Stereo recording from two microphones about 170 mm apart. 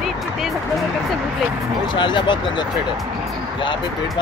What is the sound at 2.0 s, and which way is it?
Speech, 30° left (ahead or behind).